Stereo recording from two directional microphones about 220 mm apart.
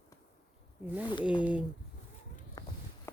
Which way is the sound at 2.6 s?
15° left (ahead or behind).